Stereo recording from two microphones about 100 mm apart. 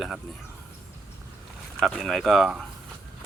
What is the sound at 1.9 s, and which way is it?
Speech, 5° left (ahead or behind).